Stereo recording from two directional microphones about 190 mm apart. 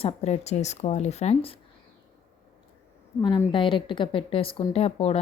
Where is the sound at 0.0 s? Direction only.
35° left (ahead or behind).